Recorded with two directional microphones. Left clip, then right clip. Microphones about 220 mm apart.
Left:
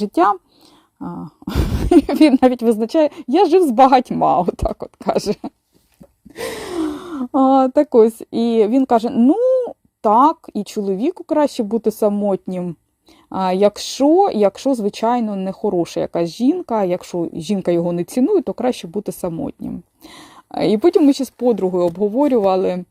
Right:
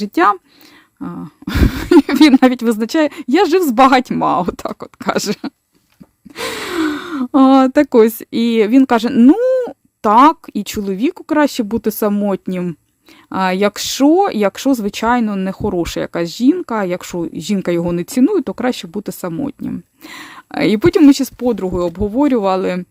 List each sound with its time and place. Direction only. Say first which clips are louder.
0.0 s speech: right 1 dB; 10° right (ahead or behind)
0.9 s a sound: right 2 dB; 20° right (ahead or behind)
2.4 s speech: right 1 dB; 10° right (ahead or behind)
6.3 s gasp: right 4 dB; 5° right (ahead or behind)
7.3 s speech: right 3 dB; 15° right (ahead or behind)
9.2 s cat: right 3 dB; 15° right (ahead or behind)
10.2 s speech: right 4 dB; 10° right (ahead or behind)